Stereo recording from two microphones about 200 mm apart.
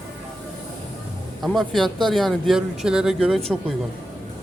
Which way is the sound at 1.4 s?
Centre (ahead or behind).